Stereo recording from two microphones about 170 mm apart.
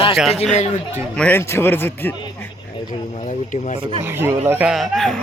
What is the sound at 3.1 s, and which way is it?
Speech, 45° left (ahead or behind).